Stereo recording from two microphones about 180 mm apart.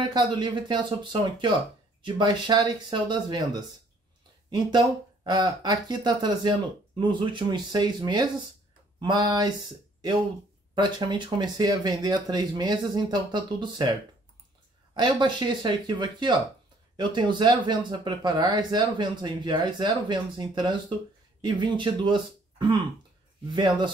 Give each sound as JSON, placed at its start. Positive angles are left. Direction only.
{"t": 0.3, "sound": "speech", "side_deg": -25}
{"t": 10.7, "sound": "speech", "side_deg": -25}
{"t": 15.0, "sound": "speech", "side_deg": -25}